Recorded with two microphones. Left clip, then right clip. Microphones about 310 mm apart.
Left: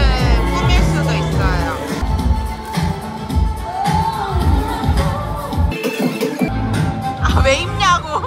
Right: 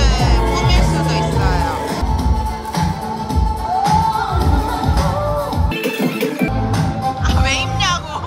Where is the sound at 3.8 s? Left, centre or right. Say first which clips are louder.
Right 2 dB; right.